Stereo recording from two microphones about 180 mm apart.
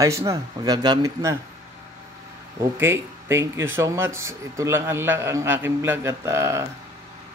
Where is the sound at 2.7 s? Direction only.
15° right (ahead or behind).